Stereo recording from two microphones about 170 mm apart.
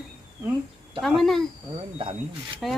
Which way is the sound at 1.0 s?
Centre (ahead or behind).